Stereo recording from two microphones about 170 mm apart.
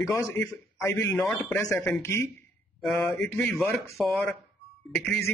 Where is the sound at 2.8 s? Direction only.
Centre (ahead or behind).